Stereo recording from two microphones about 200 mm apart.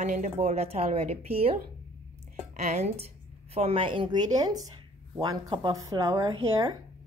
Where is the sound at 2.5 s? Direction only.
35° right (ahead or behind).